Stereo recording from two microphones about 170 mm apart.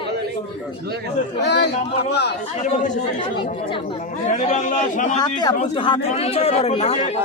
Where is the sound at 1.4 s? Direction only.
80° left.